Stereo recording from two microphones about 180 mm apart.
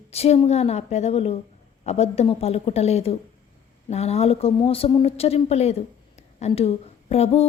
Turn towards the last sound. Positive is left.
turn(degrees=35)  # may be behind; listen again after turning